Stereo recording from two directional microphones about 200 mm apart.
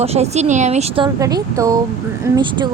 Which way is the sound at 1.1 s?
15° right (ahead or behind).